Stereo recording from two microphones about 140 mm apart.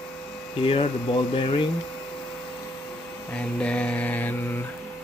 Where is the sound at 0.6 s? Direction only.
40° left (ahead or behind).